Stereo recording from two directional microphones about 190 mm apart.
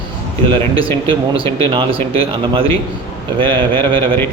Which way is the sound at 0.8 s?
25° right (ahead or behind).